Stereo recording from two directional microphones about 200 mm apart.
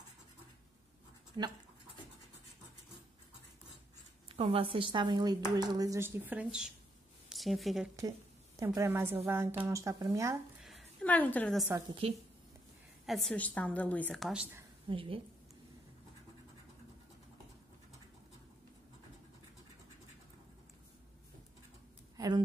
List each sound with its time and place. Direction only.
1.3 s speech: 25° right (ahead or behind)
4.4 s a woman's voice: 25° right (ahead or behind); by 7.9 s centre (ahead or behind)
8.5 s a woman's voice: 15° right (ahead or behind)
10.6 s a sound: centre (ahead or behind)
11.7 s a woman's voice: 25° right (ahead or behind)
13.0 s a woman's voice: centre (ahead or behind)
14.9 s a woman's voice: 25° right (ahead or behind)
22.1 s a sound: 20° right (ahead or behind)